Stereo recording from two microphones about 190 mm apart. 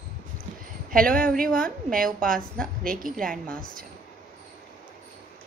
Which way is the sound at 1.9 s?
45° right (ahead or behind).